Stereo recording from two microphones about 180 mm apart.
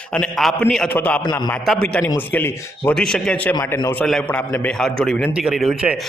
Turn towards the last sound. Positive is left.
turn(degrees=-5)  # may be behind; listen again after turning